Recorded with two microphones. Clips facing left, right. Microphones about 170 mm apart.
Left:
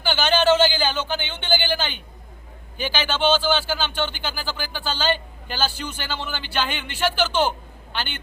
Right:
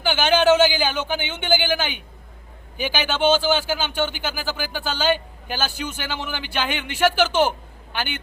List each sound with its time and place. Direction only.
0.0 s speech: 10° right (ahead or behind)